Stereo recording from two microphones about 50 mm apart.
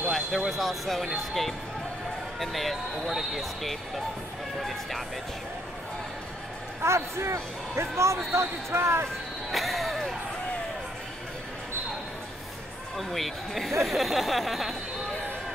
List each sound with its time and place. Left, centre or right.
0.1 s speech: centre
6.8 s speech: right
9.5 s a sound: centre
12.9 s speech: centre